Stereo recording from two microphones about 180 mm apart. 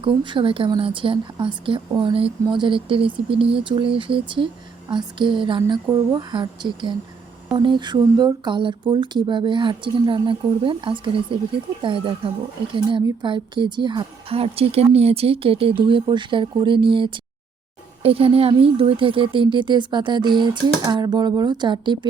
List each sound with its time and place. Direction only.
0.0 s a woman's voice: 30° right (ahead or behind)